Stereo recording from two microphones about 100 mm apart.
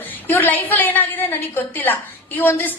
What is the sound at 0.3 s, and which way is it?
A woman's voice, 20° left (ahead or behind).